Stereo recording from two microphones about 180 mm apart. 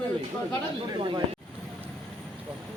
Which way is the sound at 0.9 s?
25° right (ahead or behind).